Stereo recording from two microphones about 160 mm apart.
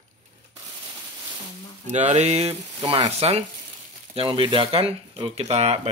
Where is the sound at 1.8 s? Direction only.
45° right (ahead or behind).